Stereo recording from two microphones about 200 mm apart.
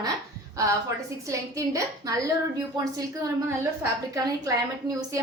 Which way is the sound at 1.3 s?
15° right (ahead or behind).